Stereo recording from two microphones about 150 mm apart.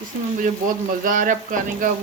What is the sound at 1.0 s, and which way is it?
Frying, 60° right (ahead or behind).